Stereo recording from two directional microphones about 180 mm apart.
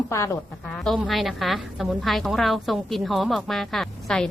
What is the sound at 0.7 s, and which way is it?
A woman's voice, centre (ahead or behind).